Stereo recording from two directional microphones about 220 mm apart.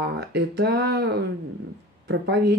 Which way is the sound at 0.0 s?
50° right (ahead or behind).